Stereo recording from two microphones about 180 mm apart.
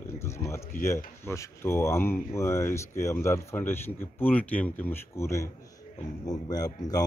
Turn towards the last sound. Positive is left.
turn(degrees=20)  # may be behind; listen again after turning